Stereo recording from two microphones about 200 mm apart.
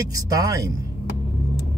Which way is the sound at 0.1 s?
15° right (ahead or behind).